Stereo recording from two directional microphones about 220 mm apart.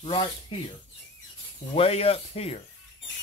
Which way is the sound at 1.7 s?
25° left (ahead or behind).